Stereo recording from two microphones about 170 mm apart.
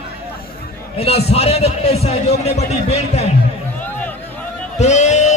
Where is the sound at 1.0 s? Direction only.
35° left (ahead or behind).